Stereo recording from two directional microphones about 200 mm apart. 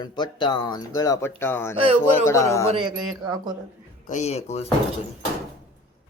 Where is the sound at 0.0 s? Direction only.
20° left (ahead or behind).